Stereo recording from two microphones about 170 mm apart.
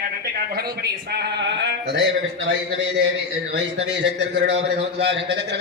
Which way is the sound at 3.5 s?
90° right.